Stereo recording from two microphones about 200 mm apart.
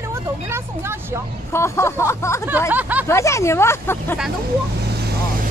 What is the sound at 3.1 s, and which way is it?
Speech, 15° left (ahead or behind).